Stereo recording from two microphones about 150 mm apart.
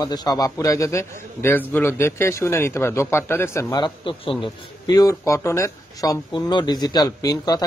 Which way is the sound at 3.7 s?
30° left (ahead or behind).